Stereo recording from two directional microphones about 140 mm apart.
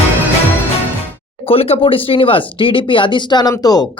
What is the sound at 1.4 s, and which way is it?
Speech, 45° left (ahead or behind).